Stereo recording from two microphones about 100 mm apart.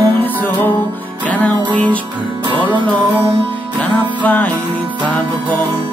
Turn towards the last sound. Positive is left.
turn(degrees=15)  # may be behind; listen again after turning